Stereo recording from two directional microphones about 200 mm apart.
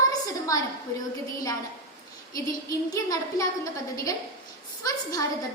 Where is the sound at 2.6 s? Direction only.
15° left (ahead or behind).